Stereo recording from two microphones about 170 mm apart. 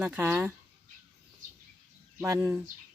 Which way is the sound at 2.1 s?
15° right (ahead or behind).